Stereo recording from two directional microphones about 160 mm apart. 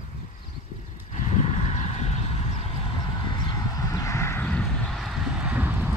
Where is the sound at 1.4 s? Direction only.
45° left (ahead or behind).